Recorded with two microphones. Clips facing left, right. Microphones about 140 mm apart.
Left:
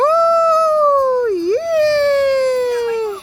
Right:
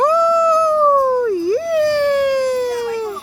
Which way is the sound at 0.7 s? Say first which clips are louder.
Left 1 dB; 5° right (ahead or behind).